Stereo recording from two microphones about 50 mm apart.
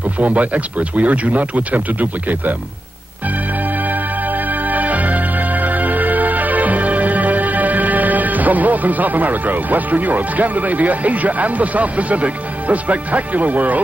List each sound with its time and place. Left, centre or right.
0.2 s speech: right
3.9 s music: right